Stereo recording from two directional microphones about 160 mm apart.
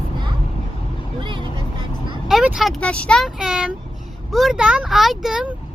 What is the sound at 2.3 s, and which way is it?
Speech, centre (ahead or behind).